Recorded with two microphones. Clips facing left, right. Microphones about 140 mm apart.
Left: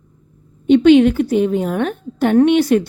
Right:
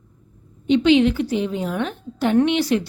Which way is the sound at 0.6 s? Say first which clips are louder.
Left 6 dB; 50° left (ahead or behind).